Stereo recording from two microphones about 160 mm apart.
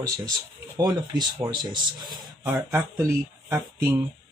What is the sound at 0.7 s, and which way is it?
Speech, 25° right (ahead or behind).